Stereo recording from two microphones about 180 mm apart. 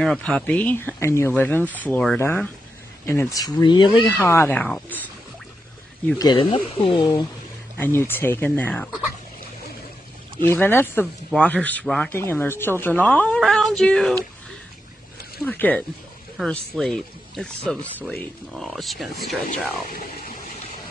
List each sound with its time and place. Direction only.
0.0 s speech: 5° left (ahead or behind); by 4.1 s 25° left (ahead or behind)
4.2 s speech: 10° left (ahead or behind)
6.1 s speech: 25° left (ahead or behind)
7.7 s speech: 15° left (ahead or behind)
10.4 s speech: 10° left (ahead or behind)
15.4 s speech: 10° left (ahead or behind)